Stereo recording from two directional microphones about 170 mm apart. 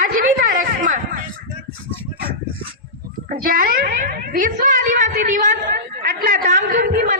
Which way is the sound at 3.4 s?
55° right (ahead or behind).